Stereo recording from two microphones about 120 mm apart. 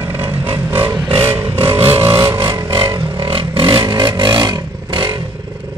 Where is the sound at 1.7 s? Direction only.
50° right (ahead or behind).